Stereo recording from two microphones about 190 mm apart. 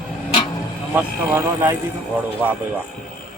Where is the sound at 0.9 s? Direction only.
10° right (ahead or behind).